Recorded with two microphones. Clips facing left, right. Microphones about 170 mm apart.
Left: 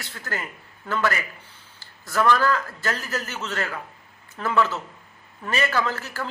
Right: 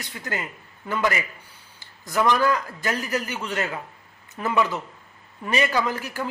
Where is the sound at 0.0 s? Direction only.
15° right (ahead or behind).